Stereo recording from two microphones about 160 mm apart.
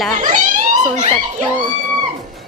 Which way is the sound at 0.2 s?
55° right (ahead or behind).